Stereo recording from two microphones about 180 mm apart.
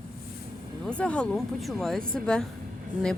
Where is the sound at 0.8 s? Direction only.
5° left (ahead or behind).